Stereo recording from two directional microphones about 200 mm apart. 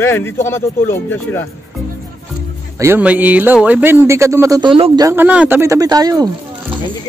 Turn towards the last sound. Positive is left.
turn(degrees=-20)  # may be behind; listen again after turning